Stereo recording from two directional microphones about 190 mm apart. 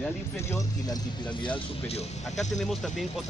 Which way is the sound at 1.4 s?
30° left (ahead or behind).